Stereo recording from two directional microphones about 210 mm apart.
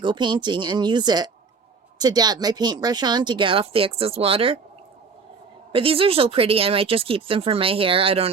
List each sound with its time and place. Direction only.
0.0 s speech: 20° right (ahead or behind)
5.7 s speech: 25° right (ahead or behind)